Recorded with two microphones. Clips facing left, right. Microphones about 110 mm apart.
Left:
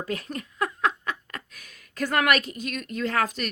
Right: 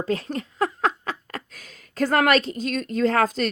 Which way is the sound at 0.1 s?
30° right (ahead or behind).